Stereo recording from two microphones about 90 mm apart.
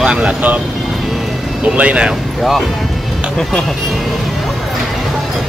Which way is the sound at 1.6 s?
10° right (ahead or behind).